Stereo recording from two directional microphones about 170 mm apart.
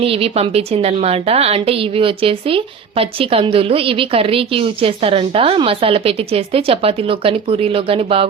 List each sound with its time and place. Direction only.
0.0 s a woman's voice: 35° right (ahead or behind)